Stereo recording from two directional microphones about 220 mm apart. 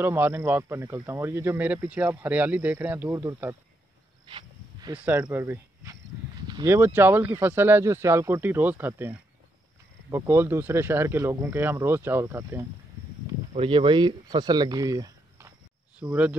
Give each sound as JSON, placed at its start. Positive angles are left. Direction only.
{"t": 0.0, "sound": "speech", "side_deg": -10}
{"t": 4.3, "sound": "a sound", "side_deg": -25}
{"t": 4.9, "sound": "speech", "side_deg": -5}
{"t": 13.6, "sound": "speech", "side_deg": -25}